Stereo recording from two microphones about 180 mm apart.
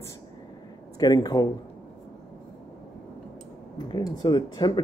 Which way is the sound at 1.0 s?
20° left (ahead or behind).